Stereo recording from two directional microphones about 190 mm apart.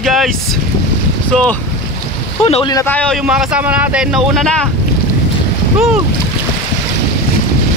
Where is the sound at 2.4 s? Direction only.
30° left (ahead or behind).